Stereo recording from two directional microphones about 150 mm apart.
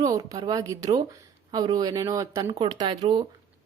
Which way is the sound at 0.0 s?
25° right (ahead or behind).